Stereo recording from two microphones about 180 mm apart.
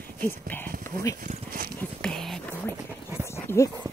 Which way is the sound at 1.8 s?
5° left (ahead or behind).